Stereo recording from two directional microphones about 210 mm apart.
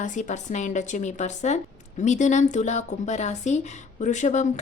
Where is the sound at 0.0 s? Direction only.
35° left (ahead or behind).